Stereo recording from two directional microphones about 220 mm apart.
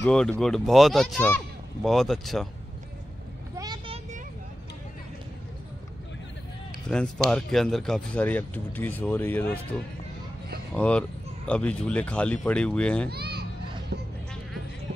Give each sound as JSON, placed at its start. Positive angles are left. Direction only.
{"t": 0.0, "sound": "speech", "side_deg": 5}
{"t": 3.5, "sound": "vehicle", "side_deg": -20}
{"t": 6.9, "sound": "speech", "side_deg": 5}
{"t": 10.7, "sound": "speech", "side_deg": 5}
{"t": 13.1, "sound": "children playing", "side_deg": -45}